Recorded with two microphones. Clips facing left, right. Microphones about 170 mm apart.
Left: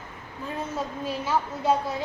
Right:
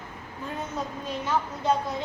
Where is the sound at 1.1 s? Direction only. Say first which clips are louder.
Left 1 dB; 5° left (ahead or behind).